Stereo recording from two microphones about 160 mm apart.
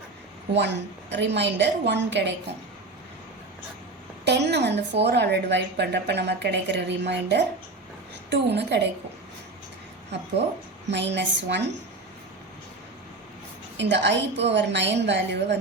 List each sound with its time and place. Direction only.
0.5 s a woman's voice: 90° right
4.3 s a woman's voice: 90° right
10.1 s a woman's voice: 90° right
13.7 s a woman's voice: 90° right